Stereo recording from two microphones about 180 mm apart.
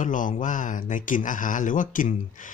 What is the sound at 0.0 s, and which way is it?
Speech, 45° left (ahead or behind).